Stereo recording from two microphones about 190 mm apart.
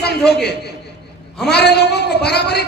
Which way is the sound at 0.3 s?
60° left (ahead or behind).